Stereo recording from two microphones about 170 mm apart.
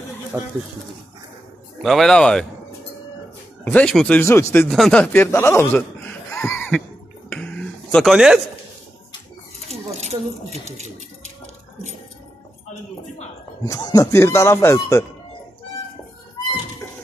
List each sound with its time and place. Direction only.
0.3 s speech: 15° right (ahead or behind)
1.8 s speech: centre (ahead or behind)
3.6 s speech: 5° left (ahead or behind)
4.2 s speech: 15° left (ahead or behind)
4.6 s speech: 5° left (ahead or behind)
7.2 s finger snapping: 10° left (ahead or behind)
9.7 s a sound: 40° right (ahead or behind)
13.7 s speech: 20° left (ahead or behind)